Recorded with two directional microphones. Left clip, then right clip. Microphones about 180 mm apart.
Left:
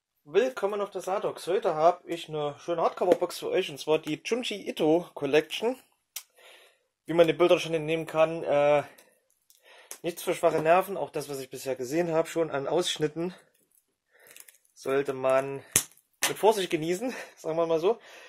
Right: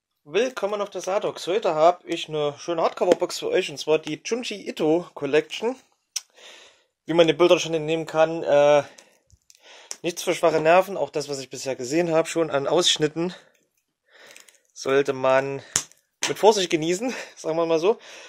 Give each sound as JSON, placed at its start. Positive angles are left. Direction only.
{"t": 0.3, "sound": "speech", "side_deg": -35}
{"t": 4.1, "sound": "speech", "side_deg": -5}
{"t": 6.4, "sound": "speech", "side_deg": -40}
{"t": 10.0, "sound": "speech", "side_deg": -40}
{"t": 14.7, "sound": "speech", "side_deg": -40}